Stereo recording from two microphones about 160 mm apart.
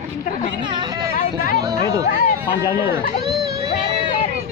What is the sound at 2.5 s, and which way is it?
Speech, 30° left (ahead or behind).